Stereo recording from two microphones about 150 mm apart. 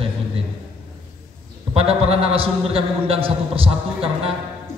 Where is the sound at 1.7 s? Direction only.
40° right (ahead or behind).